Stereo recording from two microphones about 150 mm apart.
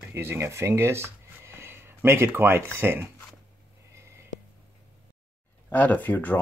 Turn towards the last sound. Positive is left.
turn(degrees=10)  # may be behind; listen again after turning